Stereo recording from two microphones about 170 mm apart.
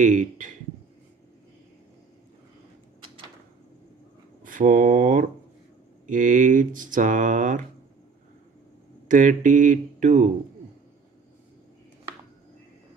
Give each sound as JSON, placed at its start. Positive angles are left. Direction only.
{"t": 0.0, "sound": "speech", "side_deg": -50}
{"t": 4.4, "sound": "speech", "side_deg": -50}
{"t": 9.0, "sound": "speech", "side_deg": -50}